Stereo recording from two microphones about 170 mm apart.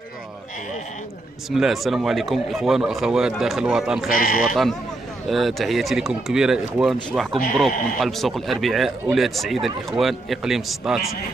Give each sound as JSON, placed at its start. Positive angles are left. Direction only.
{"t": 1.5, "sound": "a man's voice", "side_deg": 0}
{"t": 4.1, "sound": "speech", "side_deg": 55}
{"t": 5.3, "sound": "a man's voice", "side_deg": 0}